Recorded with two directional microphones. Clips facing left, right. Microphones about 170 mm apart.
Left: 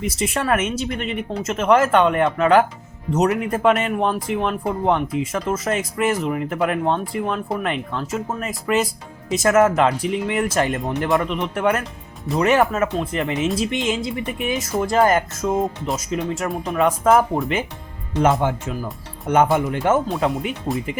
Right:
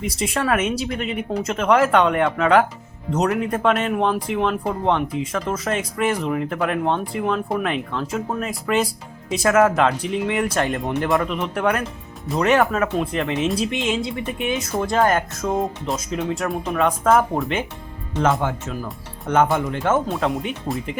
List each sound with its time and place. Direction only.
0.0 s speech: centre (ahead or behind)
18.2 s speech: 20° left (ahead or behind); by 20.9 s centre (ahead or behind)